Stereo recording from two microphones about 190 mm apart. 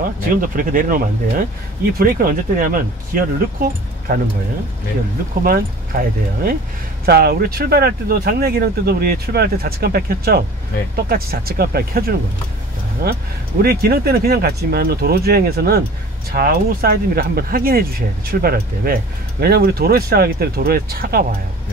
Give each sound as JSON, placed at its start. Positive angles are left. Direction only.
{"t": 0.3, "sound": "speech", "side_deg": -45}
{"t": 5.4, "sound": "speech", "side_deg": -50}
{"t": 13.6, "sound": "speech", "side_deg": -55}